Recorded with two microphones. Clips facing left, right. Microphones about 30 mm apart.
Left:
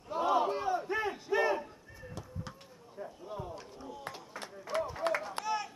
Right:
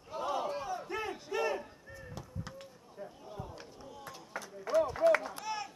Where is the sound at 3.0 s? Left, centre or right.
Centre.